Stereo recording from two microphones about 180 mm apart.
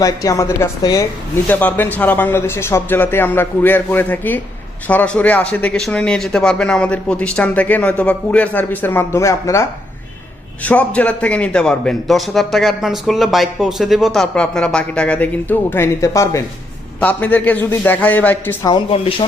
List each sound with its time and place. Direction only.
0.0 s a woman's voice: 20° left (ahead or behind)
18.6 s a woman's voice: 30° left (ahead or behind)